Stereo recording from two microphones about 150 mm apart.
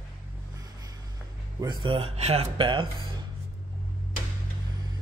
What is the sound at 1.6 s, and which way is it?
Speech, 30° right (ahead or behind).